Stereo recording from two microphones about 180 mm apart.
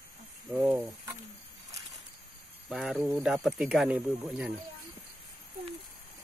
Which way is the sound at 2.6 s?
Centre (ahead or behind).